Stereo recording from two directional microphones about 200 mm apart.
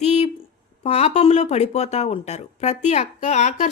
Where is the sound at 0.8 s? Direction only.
30° left (ahead or behind).